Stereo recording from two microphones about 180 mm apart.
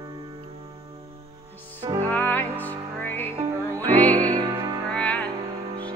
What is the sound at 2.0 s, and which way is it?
Music, 10° left (ahead or behind).